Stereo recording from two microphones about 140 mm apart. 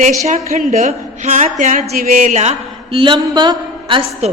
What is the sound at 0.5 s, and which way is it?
A woman's voice, 60° right (ahead or behind).